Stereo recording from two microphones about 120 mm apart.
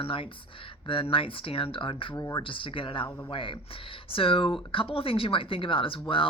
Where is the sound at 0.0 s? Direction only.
50° left (ahead or behind).